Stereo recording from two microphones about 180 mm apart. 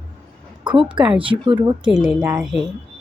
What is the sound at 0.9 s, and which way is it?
Speech, 5° right (ahead or behind).